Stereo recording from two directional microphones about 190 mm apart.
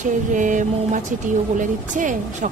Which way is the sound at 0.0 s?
40° right (ahead or behind).